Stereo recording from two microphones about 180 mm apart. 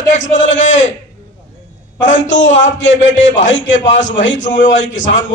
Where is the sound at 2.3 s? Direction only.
90° left.